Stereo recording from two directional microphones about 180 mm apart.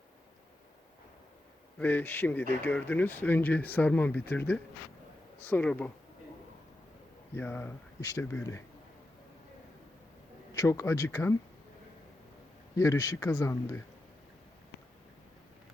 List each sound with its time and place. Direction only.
1.8 s speech: 10° left (ahead or behind)
7.3 s speech: 10° left (ahead or behind)
10.5 s speech: 15° left (ahead or behind)
12.7 s speech: 20° left (ahead or behind)